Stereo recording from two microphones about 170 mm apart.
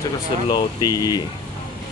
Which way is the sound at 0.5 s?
25° left (ahead or behind).